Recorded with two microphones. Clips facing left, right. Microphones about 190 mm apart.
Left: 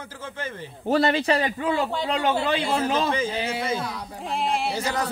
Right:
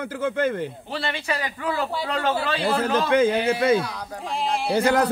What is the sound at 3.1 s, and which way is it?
A man's voice, 60° right (ahead or behind).